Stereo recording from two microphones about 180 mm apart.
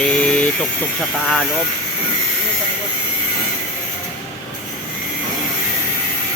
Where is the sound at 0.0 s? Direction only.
5° left (ahead or behind).